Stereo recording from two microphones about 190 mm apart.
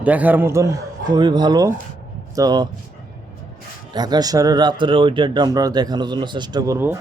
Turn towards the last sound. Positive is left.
turn(degrees=-20)  # may be behind; listen again after turning